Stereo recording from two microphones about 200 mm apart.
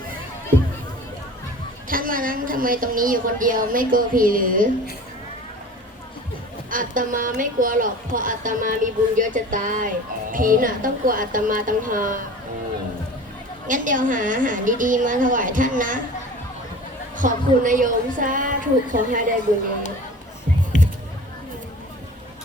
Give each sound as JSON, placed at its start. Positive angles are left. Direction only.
{"t": 1.9, "sound": "a woman's voice", "side_deg": -45}
{"t": 6.7, "sound": "speech", "side_deg": -40}
{"t": 13.7, "sound": "a woman's voice", "side_deg": -40}
{"t": 17.2, "sound": "a woman's voice", "side_deg": -40}